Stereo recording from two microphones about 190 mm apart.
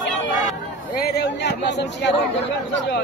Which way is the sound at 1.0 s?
60° left (ahead or behind).